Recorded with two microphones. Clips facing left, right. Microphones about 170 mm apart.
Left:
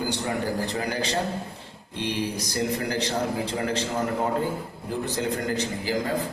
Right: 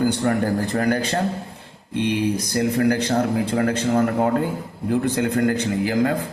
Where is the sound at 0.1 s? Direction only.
55° right (ahead or behind).